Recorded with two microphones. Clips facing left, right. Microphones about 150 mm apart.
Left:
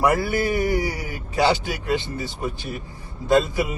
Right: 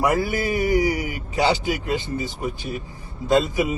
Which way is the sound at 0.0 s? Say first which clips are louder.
Left 1 dB; 15° right (ahead or behind).